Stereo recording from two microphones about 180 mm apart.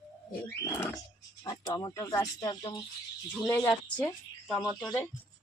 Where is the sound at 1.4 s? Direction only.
25° left (ahead or behind).